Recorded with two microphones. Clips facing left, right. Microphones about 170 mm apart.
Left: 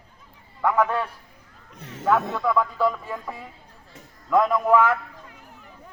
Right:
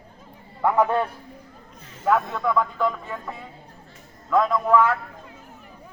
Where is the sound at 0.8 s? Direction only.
35° right (ahead or behind).